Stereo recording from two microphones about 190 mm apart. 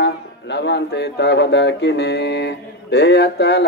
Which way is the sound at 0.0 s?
65° left (ahead or behind).